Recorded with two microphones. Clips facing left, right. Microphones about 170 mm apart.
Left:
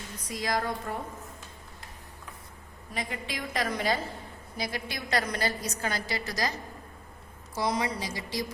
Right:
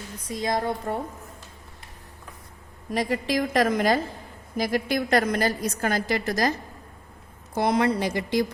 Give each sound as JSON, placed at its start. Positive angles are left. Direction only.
{"t": 0.3, "sound": "a woman's voice", "side_deg": -25}
{"t": 2.9, "sound": "a woman's voice", "side_deg": -40}